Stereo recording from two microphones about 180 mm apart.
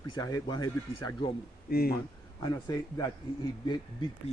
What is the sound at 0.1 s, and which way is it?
A man's voice, 20° left (ahead or behind).